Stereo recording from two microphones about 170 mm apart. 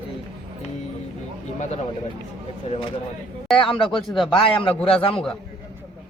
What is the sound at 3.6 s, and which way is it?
Speech, 30° left (ahead or behind).